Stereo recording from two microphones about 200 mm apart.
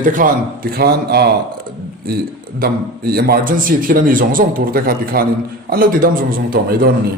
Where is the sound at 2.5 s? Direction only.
50° right (ahead or behind).